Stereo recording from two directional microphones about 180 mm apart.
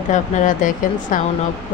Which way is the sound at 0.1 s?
40° left (ahead or behind).